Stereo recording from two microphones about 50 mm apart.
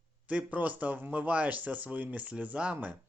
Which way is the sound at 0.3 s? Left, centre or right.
Right.